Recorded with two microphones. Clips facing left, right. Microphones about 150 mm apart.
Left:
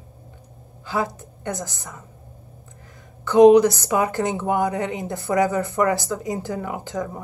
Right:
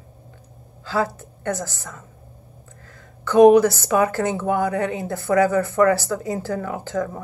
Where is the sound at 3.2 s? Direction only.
20° left (ahead or behind).